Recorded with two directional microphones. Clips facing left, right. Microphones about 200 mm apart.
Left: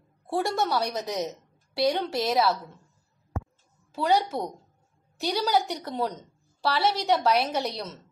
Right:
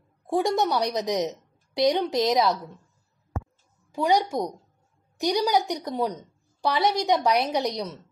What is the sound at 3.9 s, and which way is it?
A woman's voice, 15° right (ahead or behind).